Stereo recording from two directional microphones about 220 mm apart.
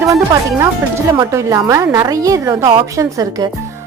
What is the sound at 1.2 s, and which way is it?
Speech, 15° right (ahead or behind).